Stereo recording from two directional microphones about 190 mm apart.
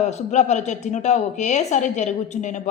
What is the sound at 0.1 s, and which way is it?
A woman's voice, 35° left (ahead or behind).